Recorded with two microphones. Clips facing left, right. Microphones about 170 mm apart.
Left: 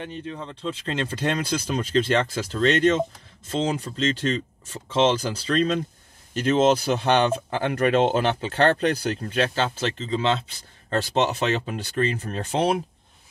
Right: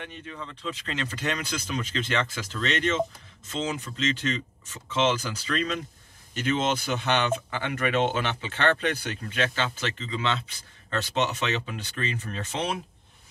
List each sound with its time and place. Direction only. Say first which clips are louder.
0.0 s speech: left 6 dB; 35° left (ahead or behind)